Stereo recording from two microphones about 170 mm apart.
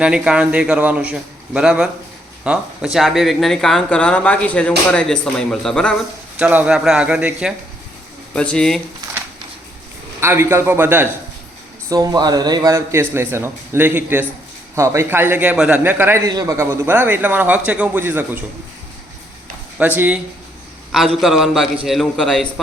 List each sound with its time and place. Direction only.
0.0 s speech: 5° right (ahead or behind)
6.4 s a man's voice: 10° right (ahead or behind)
8.4 s speech: 5° left (ahead or behind)
10.2 s a man's voice: 15° right (ahead or behind)
19.8 s a man's voice: 10° right (ahead or behind)
21.2 s speech: centre (ahead or behind)